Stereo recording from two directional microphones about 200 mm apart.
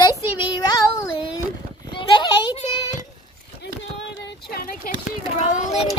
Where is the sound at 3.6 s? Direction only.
60° left (ahead or behind); by 5.7 s 40° left (ahead or behind).